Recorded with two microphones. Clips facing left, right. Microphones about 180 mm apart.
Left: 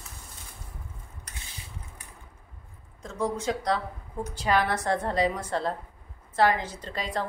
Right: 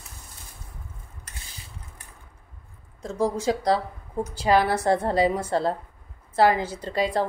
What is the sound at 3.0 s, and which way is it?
Speech, 35° right (ahead or behind).